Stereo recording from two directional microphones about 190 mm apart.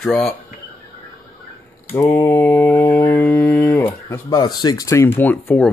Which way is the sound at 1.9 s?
10° left (ahead or behind).